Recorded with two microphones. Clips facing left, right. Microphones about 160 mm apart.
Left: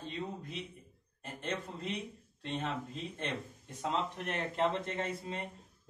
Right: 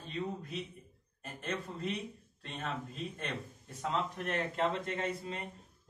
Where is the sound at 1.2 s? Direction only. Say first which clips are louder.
Even; 20° left (ahead or behind).